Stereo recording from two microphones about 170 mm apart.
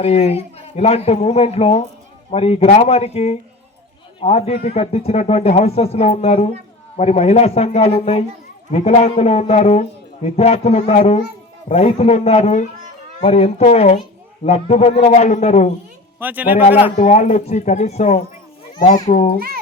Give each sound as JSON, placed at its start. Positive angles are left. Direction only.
{"t": 0.0, "sound": "a man's voice", "side_deg": 35}
{"t": 16.2, "sound": "speech", "side_deg": -10}
{"t": 17.0, "sound": "a man's voice", "side_deg": 45}